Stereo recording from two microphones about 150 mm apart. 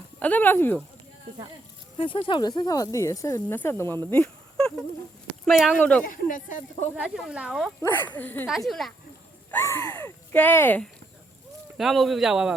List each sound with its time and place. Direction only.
0.2 s speech: 10° left (ahead or behind)
2.0 s speech: 35° left (ahead or behind); by 3.9 s 15° left (ahead or behind)
4.1 s a sound: 5° left (ahead or behind)
5.5 s speech: centre (ahead or behind)
6.1 s speech: 65° left (ahead or behind)
6.9 s speech: 5° right (ahead or behind)
8.2 s speech: 10° left (ahead or behind)
8.4 s speech: centre (ahead or behind)
9.5 s speech: 15° left (ahead or behind)
11.8 s speech: centre (ahead or behind)